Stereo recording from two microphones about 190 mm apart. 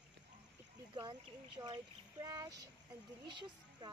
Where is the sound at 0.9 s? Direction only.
25° right (ahead or behind).